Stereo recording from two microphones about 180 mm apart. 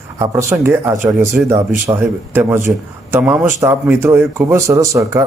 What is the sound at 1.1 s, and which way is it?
Speech, centre (ahead or behind).